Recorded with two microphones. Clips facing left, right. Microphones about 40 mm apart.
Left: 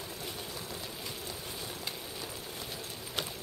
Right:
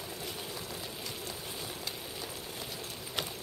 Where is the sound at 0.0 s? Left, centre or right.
Centre.